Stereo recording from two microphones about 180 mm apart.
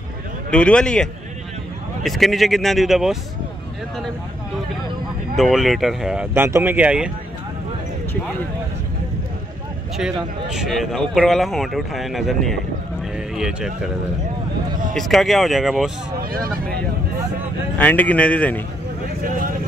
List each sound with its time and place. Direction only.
0.5 s speech: 5° left (ahead or behind)
2.0 s speech: centre (ahead or behind)
5.3 s speech: centre (ahead or behind)
6.3 s speech: 10° right (ahead or behind)
10.5 s speech: centre (ahead or behind)
15.0 s speech: centre (ahead or behind)
16.2 s speech: 55° right (ahead or behind)
17.7 s speech: 10° left (ahead or behind)